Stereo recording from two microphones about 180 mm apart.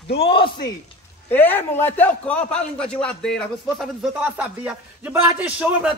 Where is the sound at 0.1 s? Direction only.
30° left (ahead or behind).